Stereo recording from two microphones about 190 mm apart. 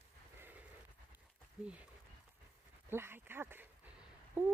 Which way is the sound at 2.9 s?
10° right (ahead or behind).